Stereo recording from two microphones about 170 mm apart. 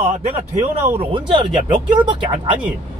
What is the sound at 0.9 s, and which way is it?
A man's voice, 35° right (ahead or behind).